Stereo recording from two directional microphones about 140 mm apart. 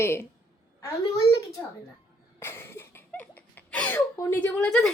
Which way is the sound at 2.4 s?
20° left (ahead or behind).